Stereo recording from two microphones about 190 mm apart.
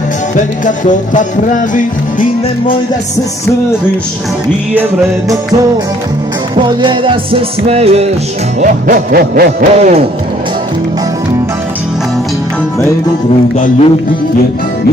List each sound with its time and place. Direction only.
0.7 s music: 40° left (ahead or behind)
6.5 s music: 25° right (ahead or behind); by 9.7 s 45° right (ahead or behind)
9.8 s speech: 35° right (ahead or behind)
13.6 s music: 35° left (ahead or behind)